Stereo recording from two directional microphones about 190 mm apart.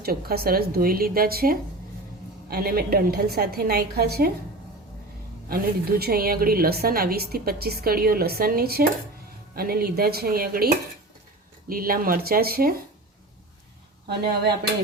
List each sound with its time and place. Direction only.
0.0 s a woman's voice: 55° right (ahead or behind)
5.5 s a woman's voice: 50° right (ahead or behind)
11.7 s a woman's voice: 50° right (ahead or behind)